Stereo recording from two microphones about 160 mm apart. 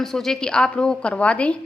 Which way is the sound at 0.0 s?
5° left (ahead or behind).